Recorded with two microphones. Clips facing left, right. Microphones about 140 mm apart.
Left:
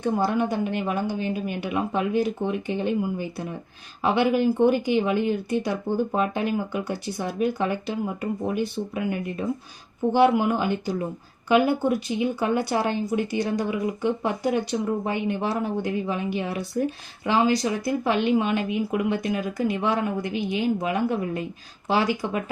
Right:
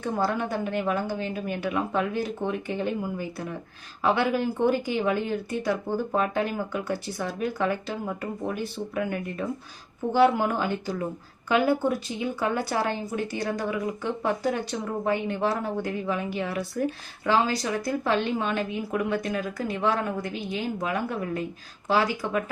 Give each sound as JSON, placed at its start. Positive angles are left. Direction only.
{"t": 0.0, "sound": "speech", "side_deg": 20}